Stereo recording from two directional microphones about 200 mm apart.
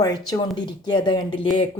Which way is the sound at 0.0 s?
20° left (ahead or behind).